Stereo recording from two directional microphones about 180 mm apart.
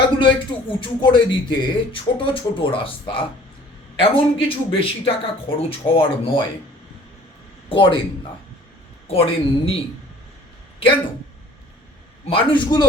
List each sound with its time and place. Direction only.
0.2 s speech: 30° left (ahead or behind)
7.7 s speech: 30° left (ahead or behind)
9.0 s speech: 30° left (ahead or behind)
12.2 s speech: 30° left (ahead or behind)